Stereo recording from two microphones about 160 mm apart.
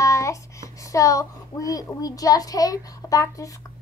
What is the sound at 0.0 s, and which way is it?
Child singing, 20° left (ahead or behind).